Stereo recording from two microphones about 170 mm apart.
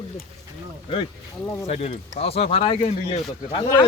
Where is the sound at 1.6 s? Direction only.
35° left (ahead or behind).